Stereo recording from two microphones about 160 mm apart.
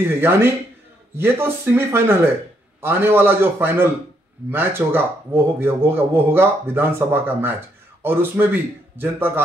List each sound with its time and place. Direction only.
0.1 s a man's voice: 15° right (ahead or behind)